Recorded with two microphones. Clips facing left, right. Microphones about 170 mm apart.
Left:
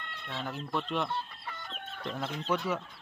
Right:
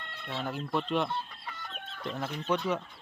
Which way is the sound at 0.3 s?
20° right (ahead or behind).